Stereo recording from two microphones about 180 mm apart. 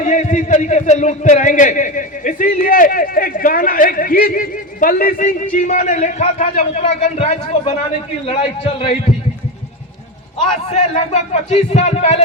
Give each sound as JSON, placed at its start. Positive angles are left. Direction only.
{"t": 0.0, "sound": "a man's voice", "side_deg": 40}
{"t": 10.9, "sound": "speech", "side_deg": 35}